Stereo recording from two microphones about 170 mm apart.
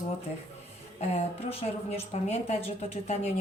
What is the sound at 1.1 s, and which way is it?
Speech, 35° left (ahead or behind).